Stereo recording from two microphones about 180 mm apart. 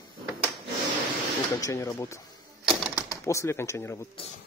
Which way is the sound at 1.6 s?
15° left (ahead or behind).